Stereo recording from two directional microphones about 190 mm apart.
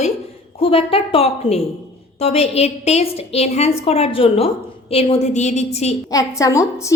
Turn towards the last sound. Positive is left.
turn(degrees=15)  # may be behind; listen again after turning